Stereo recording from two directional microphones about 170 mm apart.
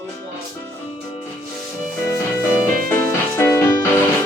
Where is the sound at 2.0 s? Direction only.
15° left (ahead or behind).